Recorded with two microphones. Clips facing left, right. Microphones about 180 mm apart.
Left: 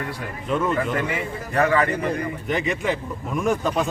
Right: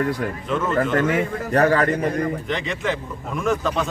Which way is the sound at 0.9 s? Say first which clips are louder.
Right 6 dB; 45° right (ahead or behind).